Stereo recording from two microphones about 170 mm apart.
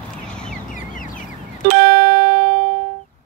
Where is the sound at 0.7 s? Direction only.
50° left (ahead or behind).